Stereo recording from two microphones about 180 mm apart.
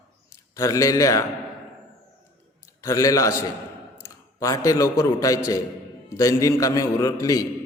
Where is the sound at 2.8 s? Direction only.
20° left (ahead or behind).